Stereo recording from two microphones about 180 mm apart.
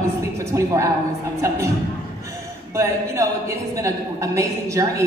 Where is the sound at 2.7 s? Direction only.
15° right (ahead or behind).